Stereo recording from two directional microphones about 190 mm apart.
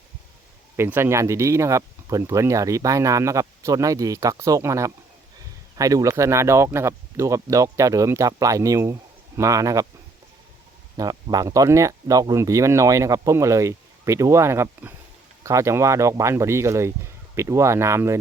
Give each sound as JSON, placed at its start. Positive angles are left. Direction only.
{"t": 0.8, "sound": "speech", "side_deg": -10}
{"t": 10.9, "sound": "speech", "side_deg": -20}